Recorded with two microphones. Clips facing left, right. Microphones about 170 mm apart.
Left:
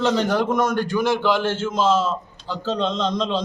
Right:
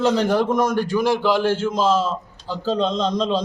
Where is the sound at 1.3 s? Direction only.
35° right (ahead or behind).